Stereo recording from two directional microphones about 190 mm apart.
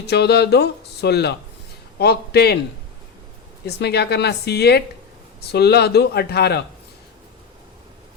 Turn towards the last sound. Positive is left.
turn(degrees=60)  # may be behind; listen again after turning